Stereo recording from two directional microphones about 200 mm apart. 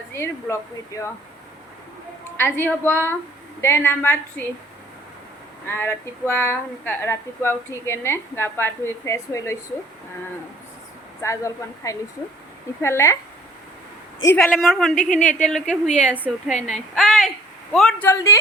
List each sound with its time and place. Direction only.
0.1 s speech: 15° left (ahead or behind)
2.4 s speech: 10° left (ahead or behind)
5.6 s speech: 10° left (ahead or behind)
11.2 s speech: 15° left (ahead or behind)
14.3 s a woman's voice: centre (ahead or behind)
14.9 s speech: 40° left (ahead or behind)
15.4 s a woman's voice: 5° left (ahead or behind)
18.1 s speech: 15° left (ahead or behind)